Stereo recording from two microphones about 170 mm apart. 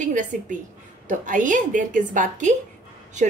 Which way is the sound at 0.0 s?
50° right (ahead or behind).